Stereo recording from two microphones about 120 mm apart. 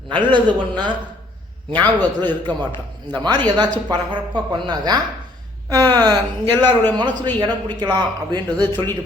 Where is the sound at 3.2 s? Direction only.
35° right (ahead or behind).